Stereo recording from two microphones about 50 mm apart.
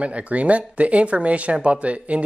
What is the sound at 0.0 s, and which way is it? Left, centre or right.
Speech, right.